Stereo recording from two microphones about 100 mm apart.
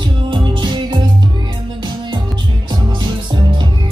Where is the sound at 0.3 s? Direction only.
50° right (ahead or behind).